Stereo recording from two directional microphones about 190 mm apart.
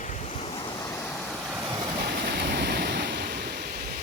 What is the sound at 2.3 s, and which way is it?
Waves, 60° right (ahead or behind).